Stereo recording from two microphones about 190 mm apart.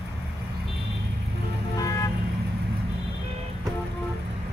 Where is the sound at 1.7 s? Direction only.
20° left (ahead or behind).